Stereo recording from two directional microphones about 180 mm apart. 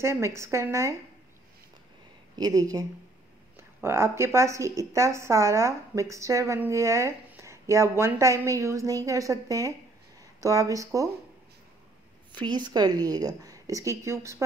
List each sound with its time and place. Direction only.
0.0 s a woman's voice: 15° right (ahead or behind)
2.3 s a woman's voice: 20° right (ahead or behind)
12.3 s a woman's voice: 25° right (ahead or behind)